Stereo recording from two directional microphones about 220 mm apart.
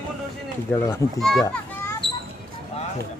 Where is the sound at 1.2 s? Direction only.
Centre (ahead or behind).